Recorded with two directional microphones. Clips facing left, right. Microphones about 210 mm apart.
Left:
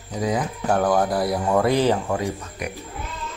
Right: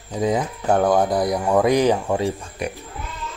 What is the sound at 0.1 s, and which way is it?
Speech, 25° right (ahead or behind).